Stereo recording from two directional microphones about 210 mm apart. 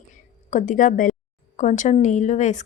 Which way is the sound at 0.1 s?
35° left (ahead or behind).